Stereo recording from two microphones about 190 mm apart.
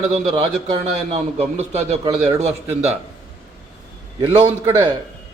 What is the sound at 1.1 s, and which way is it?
Speech, 35° right (ahead or behind).